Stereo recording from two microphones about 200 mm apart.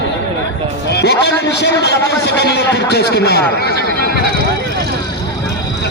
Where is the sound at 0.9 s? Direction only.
55° left (ahead or behind).